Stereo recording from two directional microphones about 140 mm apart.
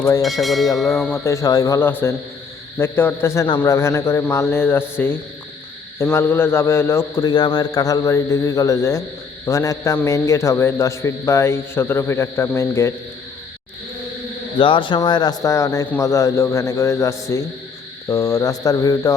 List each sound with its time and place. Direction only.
0.2 s a sound: centre (ahead or behind)
0.9 s speech: 15° left (ahead or behind)
1.8 s a man's voice: 15° left (ahead or behind)
3.4 s a man's voice: 30° left (ahead or behind)
3.7 s a man's voice: 20° left (ahead or behind)
7.3 s speech: 30° left (ahead or behind)
14.6 s speech: 35° left (ahead or behind)